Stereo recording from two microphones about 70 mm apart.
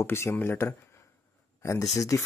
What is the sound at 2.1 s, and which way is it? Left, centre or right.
Speech, left.